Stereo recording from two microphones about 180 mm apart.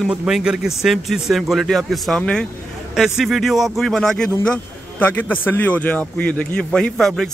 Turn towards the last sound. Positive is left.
turn(degrees=5)  # may be behind; listen again after turning